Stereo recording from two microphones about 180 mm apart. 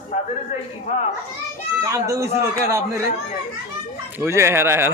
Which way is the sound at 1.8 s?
15° right (ahead or behind).